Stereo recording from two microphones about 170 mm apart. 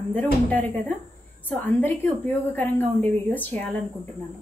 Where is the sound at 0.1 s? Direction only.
10° left (ahead or behind).